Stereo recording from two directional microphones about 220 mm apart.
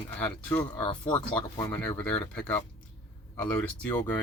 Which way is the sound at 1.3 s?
10° left (ahead or behind).